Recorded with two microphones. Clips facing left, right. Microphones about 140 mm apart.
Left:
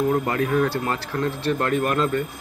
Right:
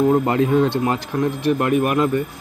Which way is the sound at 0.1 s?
25° right (ahead or behind).